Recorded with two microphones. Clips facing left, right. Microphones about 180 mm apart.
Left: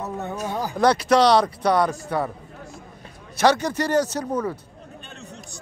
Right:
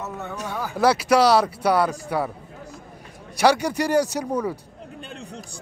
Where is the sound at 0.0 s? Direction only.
15° left (ahead or behind).